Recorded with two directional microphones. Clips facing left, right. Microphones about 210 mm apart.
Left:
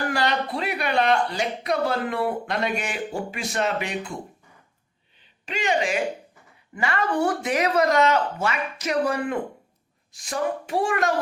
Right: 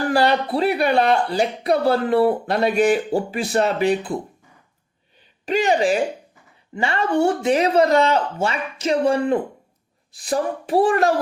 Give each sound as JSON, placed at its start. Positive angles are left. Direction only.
{"t": 0.1, "sound": "speech", "side_deg": -35}
{"t": 5.5, "sound": "speech", "side_deg": -35}